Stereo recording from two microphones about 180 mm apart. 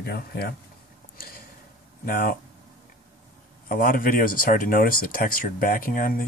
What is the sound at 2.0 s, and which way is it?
Speech, 55° left (ahead or behind).